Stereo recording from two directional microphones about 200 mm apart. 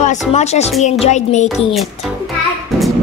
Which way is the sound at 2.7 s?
Centre (ahead or behind).